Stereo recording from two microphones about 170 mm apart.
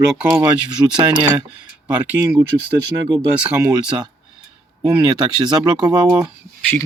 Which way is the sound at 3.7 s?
25° right (ahead or behind).